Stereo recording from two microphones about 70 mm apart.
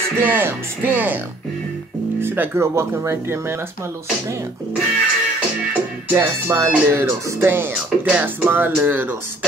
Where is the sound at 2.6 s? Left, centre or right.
Right.